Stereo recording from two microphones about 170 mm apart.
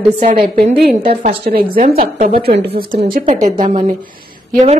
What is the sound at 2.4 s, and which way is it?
Speech, 65° right (ahead or behind).